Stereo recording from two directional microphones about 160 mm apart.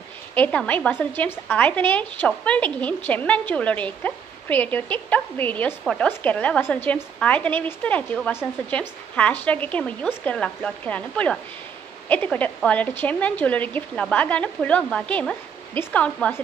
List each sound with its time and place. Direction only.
0.3 s a woman's voice: 10° left (ahead or behind)